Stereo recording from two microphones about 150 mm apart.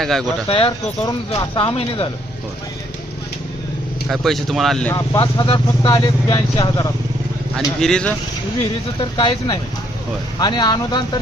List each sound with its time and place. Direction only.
0.0 s speech: 5° left (ahead or behind)
0.4 s speech: 35° left (ahead or behind)
4.1 s speech: centre (ahead or behind)
4.9 s speech: 25° left (ahead or behind)
7.8 s speech: 5° left (ahead or behind)
9.0 s speech: 30° left (ahead or behind)